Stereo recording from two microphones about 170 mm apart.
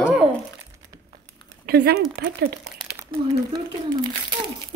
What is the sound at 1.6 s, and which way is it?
Speech, 70° right (ahead or behind).